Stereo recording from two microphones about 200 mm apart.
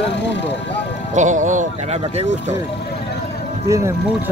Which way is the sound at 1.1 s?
40° right (ahead or behind).